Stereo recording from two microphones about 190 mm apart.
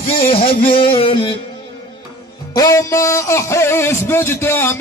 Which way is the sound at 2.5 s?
20° left (ahead or behind).